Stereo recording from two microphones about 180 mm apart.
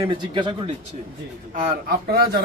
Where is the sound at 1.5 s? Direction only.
50° right (ahead or behind).